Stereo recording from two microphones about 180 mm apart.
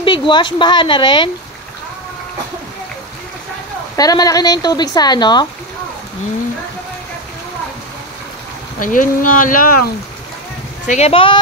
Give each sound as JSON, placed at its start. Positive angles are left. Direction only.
{"t": 0.0, "sound": "a woman's voice", "side_deg": 25}
{"t": 3.9, "sound": "speech", "side_deg": 20}
{"t": 8.7, "sound": "speech", "side_deg": 50}
{"t": 10.9, "sound": "speech", "side_deg": 35}